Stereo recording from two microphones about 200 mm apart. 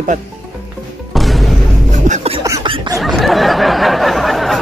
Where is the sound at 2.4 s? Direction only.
20° right (ahead or behind).